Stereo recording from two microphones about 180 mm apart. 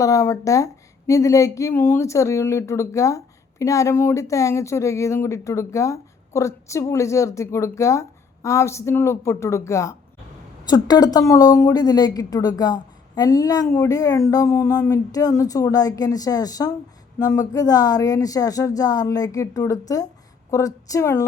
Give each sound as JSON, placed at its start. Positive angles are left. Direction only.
{"t": 0.0, "sound": "a woman's voice", "side_deg": 15}